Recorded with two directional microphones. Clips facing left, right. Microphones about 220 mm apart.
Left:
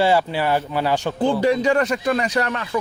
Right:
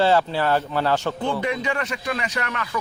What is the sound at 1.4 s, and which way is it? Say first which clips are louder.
A man's voice: left 8 dB; 35° left (ahead or behind).